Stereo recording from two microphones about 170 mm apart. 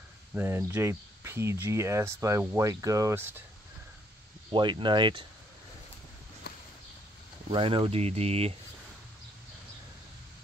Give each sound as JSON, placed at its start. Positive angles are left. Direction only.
{"t": 0.3, "sound": "speech", "side_deg": -15}
{"t": 4.5, "sound": "speech", "side_deg": -25}
{"t": 6.5, "sound": "a sound", "side_deg": 75}
{"t": 7.5, "sound": "speech", "side_deg": -30}